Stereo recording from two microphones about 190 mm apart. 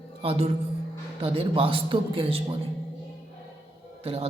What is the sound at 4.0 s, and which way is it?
Speech, 30° right (ahead or behind).